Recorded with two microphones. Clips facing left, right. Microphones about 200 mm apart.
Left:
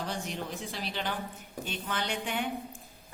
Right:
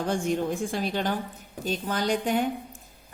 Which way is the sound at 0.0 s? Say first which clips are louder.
Right 10 dB; 50° right (ahead or behind).